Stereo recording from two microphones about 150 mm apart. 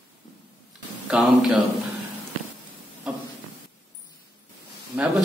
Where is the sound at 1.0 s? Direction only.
5° right (ahead or behind).